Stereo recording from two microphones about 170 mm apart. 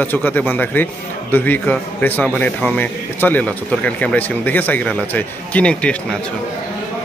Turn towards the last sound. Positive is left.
turn(degrees=5)  # may be behind; listen again after turning